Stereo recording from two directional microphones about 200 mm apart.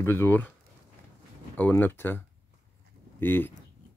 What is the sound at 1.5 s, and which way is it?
Speech, 10° left (ahead or behind).